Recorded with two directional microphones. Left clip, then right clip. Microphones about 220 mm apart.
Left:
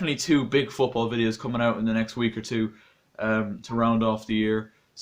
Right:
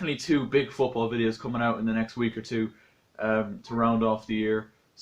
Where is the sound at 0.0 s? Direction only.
45° left (ahead or behind).